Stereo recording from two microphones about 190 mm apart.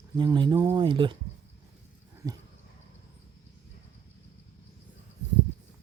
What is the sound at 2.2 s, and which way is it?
Speech, 20° right (ahead or behind).